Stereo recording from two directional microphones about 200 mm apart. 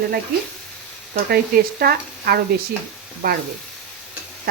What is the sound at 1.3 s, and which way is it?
Speech, 50° right (ahead or behind).